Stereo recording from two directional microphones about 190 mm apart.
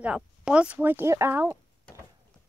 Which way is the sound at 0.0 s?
5° right (ahead or behind).